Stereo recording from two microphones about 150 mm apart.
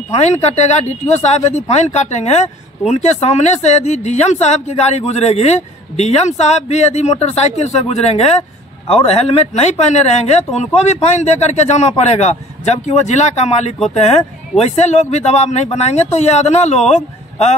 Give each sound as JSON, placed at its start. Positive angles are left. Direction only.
{"t": 0.1, "sound": "speech", "side_deg": 45}